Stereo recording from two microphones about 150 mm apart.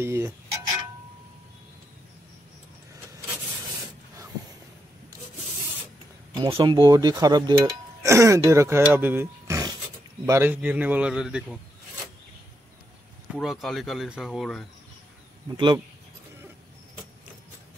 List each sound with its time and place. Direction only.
0.0 s a sound: 20° right (ahead or behind)
6.3 s a man's voice: 30° right (ahead or behind); by 11.6 s 5° right (ahead or behind)
13.3 s speech: centre (ahead or behind)
15.5 s speech: 30° right (ahead or behind)